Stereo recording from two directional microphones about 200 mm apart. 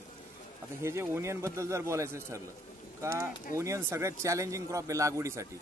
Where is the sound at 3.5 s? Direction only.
15° right (ahead or behind).